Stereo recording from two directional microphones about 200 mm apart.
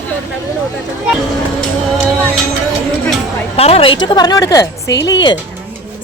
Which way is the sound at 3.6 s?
30° left (ahead or behind).